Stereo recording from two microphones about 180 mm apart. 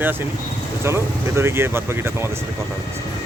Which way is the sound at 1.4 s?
15° right (ahead or behind).